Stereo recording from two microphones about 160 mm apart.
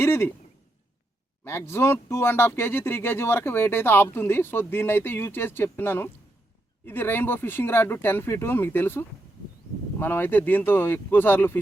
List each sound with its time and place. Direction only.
0.0 s speech: 15° left (ahead or behind)
1.5 s speech: 15° left (ahead or behind)